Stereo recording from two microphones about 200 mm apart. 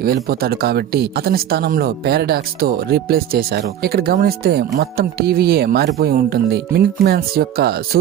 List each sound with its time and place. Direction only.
0.0 s speech: 50° right (ahead or behind)